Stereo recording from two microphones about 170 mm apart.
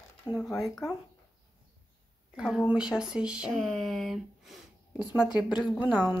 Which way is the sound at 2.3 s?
5° right (ahead or behind).